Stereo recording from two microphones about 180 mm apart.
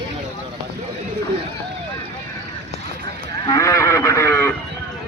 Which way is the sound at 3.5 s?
15° left (ahead or behind).